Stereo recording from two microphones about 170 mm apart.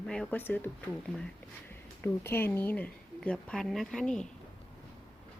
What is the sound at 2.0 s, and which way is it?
Speech, 10° left (ahead or behind).